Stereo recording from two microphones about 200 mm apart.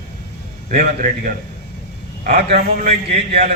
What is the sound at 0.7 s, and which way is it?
A man's voice, 45° right (ahead or behind).